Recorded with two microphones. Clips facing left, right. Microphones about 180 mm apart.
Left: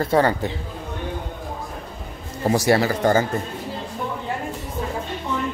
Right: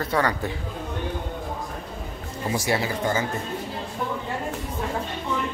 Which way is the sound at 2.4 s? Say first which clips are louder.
Left 7 dB; 40° left (ahead or behind).